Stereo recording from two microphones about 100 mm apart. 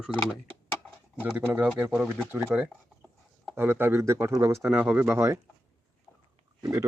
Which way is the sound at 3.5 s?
25° right (ahead or behind).